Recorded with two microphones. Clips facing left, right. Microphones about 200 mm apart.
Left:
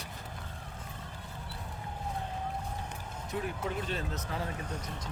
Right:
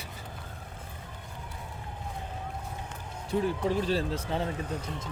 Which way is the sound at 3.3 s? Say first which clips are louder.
Right 8 dB; 30° right (ahead or behind).